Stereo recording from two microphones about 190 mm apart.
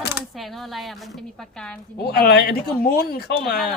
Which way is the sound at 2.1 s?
55° left (ahead or behind).